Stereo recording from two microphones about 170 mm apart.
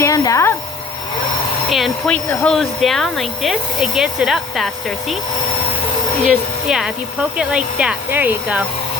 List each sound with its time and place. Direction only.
0.0 s speech: 20° left (ahead or behind)
1.7 s speech: centre (ahead or behind)
6.2 s speech: 5° right (ahead or behind)